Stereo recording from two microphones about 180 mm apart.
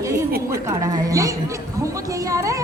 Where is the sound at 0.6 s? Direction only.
15° right (ahead or behind).